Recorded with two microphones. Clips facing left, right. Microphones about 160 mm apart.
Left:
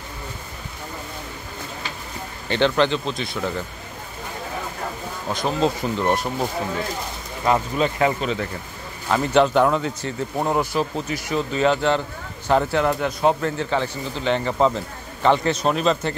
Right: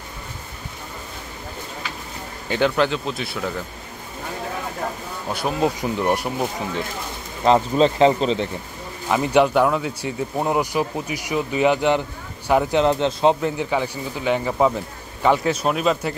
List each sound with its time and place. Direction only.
2.5 s speech: 5° right (ahead or behind)
5.3 s speech: 10° right (ahead or behind)
7.4 s speech: 25° right (ahead or behind)
9.1 s speech: 10° right (ahead or behind)